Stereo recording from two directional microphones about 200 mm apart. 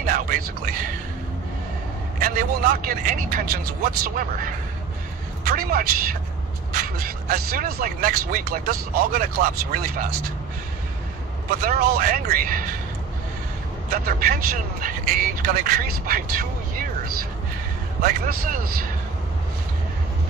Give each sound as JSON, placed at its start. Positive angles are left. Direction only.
{"t": 0.0, "sound": "whispering", "side_deg": -45}
{"t": 2.2, "sound": "a man's voice", "side_deg": -45}
{"t": 11.6, "sound": "speech", "side_deg": -50}
{"t": 13.9, "sound": "speech", "side_deg": -50}
{"t": 18.0, "sound": "speech", "side_deg": -45}